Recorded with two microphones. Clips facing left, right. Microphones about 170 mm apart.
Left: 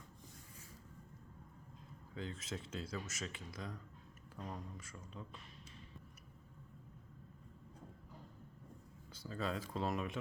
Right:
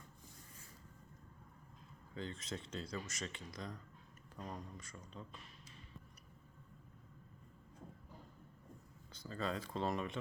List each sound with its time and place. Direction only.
2.1 s speech: 5° left (ahead or behind)
9.1 s speech: 5° left (ahead or behind)